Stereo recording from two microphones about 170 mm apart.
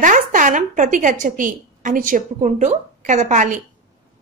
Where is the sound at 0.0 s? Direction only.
50° right (ahead or behind).